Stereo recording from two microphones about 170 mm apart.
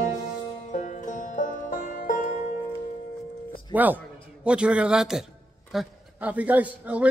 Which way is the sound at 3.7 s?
10° right (ahead or behind).